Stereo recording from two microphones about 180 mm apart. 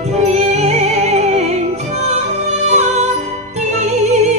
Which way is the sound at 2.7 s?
40° right (ahead or behind).